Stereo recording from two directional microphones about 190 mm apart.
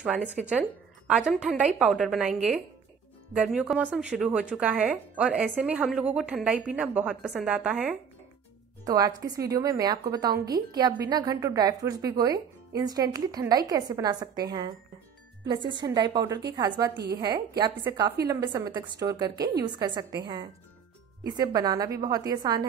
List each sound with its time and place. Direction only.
0.0 s a woman's voice: 5° right (ahead or behind)
8.8 s a woman's voice: 20° right (ahead or behind)
15.4 s a woman's voice: 25° right (ahead or behind)
21.2 s a woman's voice: 20° right (ahead or behind)